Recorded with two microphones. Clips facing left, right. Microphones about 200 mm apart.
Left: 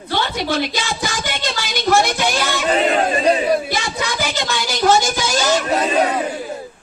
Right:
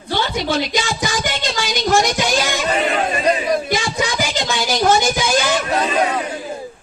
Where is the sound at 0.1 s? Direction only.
55° left (ahead or behind).